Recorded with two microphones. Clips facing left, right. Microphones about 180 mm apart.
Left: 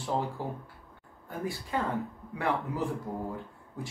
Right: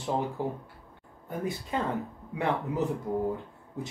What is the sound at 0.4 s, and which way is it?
Speech, 20° right (ahead or behind).